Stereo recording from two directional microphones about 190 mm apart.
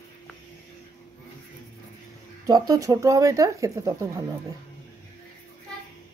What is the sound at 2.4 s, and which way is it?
Speech, 20° right (ahead or behind).